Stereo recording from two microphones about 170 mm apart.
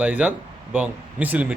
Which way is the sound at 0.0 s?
10° right (ahead or behind).